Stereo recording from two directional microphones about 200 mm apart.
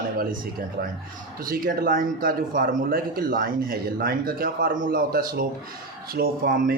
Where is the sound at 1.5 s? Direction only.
45° right (ahead or behind).